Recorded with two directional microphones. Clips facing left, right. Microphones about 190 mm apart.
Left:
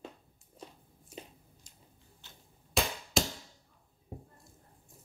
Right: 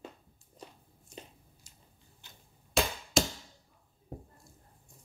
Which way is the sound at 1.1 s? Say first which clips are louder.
Left 1 dB; 5° left (ahead or behind).